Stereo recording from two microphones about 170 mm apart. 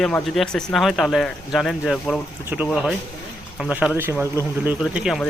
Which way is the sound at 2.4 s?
10° right (ahead or behind).